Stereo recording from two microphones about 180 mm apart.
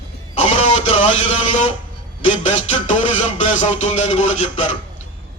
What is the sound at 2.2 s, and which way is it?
Speech, 40° left (ahead or behind).